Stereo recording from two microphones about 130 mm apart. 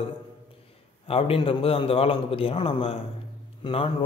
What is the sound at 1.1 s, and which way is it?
A man's voice, 45° left (ahead or behind).